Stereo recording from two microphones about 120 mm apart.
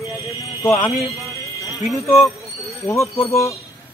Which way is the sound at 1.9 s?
25° left (ahead or behind).